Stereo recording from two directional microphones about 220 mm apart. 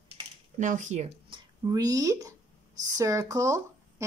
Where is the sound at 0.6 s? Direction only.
35° right (ahead or behind).